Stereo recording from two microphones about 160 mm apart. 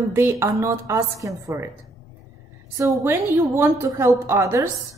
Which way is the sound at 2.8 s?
20° right (ahead or behind).